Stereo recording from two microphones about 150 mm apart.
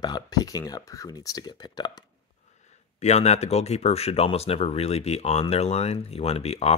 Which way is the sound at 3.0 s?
45° left (ahead or behind).